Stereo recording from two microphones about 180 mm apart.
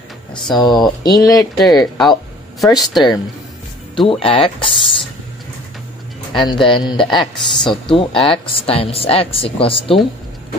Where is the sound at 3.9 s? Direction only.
30° left (ahead or behind).